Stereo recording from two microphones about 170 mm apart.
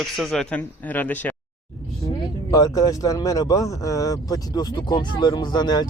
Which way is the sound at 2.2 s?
20° left (ahead or behind).